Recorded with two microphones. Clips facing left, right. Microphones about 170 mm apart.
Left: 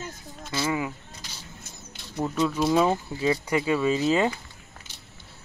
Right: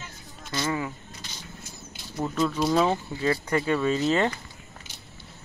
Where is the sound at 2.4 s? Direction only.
5° left (ahead or behind).